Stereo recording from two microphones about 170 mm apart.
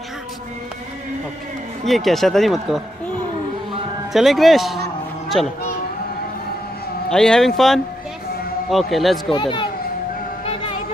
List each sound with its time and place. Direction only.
1.9 s speech: centre (ahead or behind)
4.1 s speech: centre (ahead or behind)
7.1 s speech: 5° left (ahead or behind)
9.3 s a child's voice: 30° left (ahead or behind)